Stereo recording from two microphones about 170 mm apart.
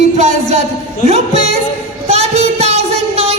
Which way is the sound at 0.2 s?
40° right (ahead or behind).